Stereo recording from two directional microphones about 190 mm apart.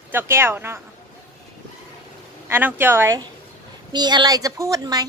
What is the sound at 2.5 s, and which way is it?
A woman's voice, 10° right (ahead or behind).